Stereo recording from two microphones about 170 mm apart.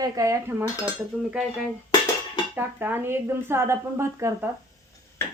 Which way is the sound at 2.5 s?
10° right (ahead or behind).